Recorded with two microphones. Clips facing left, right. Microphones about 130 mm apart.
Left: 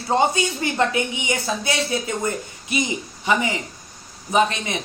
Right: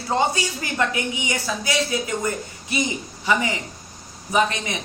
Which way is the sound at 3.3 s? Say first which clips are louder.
Left 1 dB; 20° left (ahead or behind).